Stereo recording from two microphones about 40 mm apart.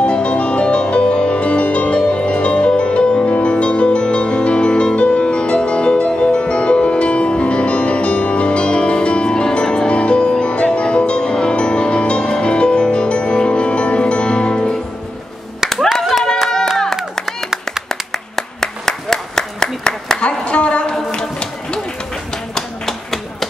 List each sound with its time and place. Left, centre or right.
0.0 s music: left
16.0 s clapping: centre
16.3 s a sound: centre
17.8 s clapping: centre
20.2 s a sound: left
21.1 s music: left